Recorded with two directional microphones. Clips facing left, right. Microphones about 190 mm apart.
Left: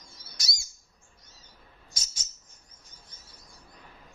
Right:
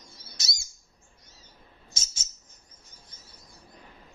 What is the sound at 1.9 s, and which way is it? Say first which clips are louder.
Chirp: right 1 dB; 25° right (ahead or behind).